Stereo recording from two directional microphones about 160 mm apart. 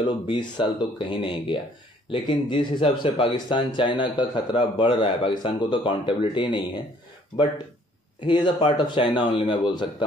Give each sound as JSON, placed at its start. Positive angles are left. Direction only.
{"t": 0.0, "sound": "a man's voice", "side_deg": 30}
{"t": 8.2, "sound": "a man's voice", "side_deg": 30}